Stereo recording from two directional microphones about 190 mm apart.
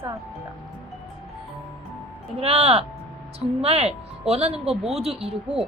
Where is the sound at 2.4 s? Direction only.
35° right (ahead or behind).